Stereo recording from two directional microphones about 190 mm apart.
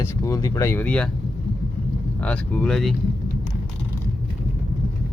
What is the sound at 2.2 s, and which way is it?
Speech, 5° left (ahead or behind).